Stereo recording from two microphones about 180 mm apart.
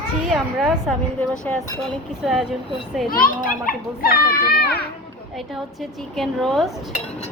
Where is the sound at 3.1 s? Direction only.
55° left (ahead or behind).